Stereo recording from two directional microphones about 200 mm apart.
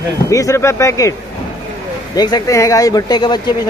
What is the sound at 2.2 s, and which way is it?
Speech, 20° left (ahead or behind).